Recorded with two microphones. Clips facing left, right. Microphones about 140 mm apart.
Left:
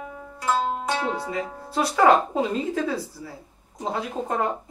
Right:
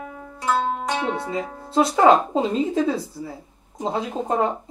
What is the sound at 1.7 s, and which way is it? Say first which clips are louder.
Speech: right 3 dB; 25° right (ahead or behind).